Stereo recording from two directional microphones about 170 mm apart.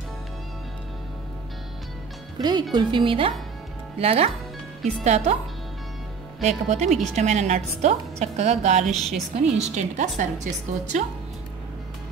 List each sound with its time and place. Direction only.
2.3 s a woman's voice: 25° right (ahead or behind)
6.4 s a woman's voice: 45° right (ahead or behind)
8.9 s a woman's voice: centre (ahead or behind)
9.3 s a woman's voice: 45° right (ahead or behind)